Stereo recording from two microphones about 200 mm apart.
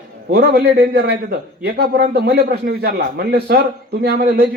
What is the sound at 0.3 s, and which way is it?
A man's voice, 55° right (ahead or behind).